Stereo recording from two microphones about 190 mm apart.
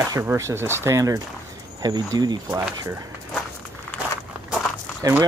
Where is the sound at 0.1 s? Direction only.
15° right (ahead or behind).